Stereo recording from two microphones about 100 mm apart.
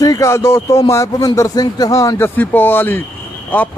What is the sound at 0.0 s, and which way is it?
Speech, 35° left (ahead or behind).